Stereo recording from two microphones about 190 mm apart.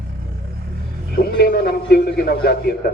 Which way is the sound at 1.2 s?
55° left (ahead or behind).